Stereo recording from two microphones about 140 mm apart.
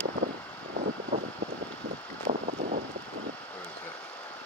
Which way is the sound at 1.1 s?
45° right (ahead or behind).